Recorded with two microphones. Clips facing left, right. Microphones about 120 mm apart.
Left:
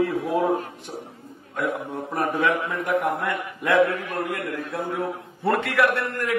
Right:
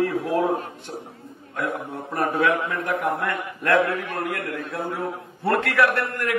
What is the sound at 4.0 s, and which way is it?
Speech, 65° right (ahead or behind).